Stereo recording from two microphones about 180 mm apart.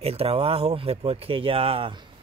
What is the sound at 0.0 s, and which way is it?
Speech, 35° right (ahead or behind).